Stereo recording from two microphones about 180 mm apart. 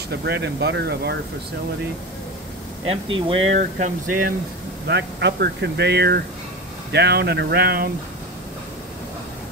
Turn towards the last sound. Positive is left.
turn(degrees=-60)  # may be behind; listen again after turning